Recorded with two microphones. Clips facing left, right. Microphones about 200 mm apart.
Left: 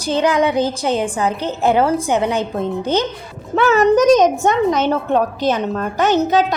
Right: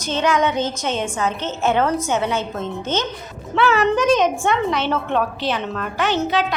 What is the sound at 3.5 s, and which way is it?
A woman's voice, 40° left (ahead or behind).